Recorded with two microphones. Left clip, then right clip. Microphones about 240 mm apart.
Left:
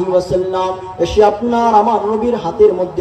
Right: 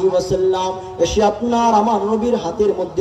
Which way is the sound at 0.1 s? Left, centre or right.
Right.